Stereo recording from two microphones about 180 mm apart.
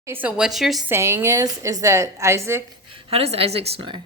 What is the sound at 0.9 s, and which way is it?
A woman's voice, 15° right (ahead or behind).